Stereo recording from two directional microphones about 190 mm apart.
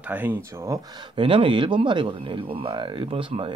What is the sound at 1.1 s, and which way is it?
Speech, 25° right (ahead or behind).